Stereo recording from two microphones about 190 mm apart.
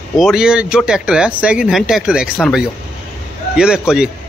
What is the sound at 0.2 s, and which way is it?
A man's voice, 5° right (ahead or behind).